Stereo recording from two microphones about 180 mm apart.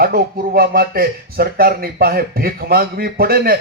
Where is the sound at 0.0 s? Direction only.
55° right (ahead or behind).